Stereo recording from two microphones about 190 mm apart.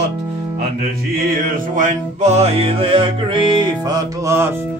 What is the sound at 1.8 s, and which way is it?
Music, 40° right (ahead or behind).